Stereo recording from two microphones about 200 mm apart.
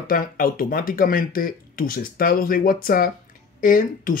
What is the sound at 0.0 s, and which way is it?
Speech, 45° left (ahead or behind).